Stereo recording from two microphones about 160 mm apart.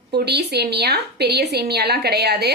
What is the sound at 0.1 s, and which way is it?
A woman's voice, 90° right.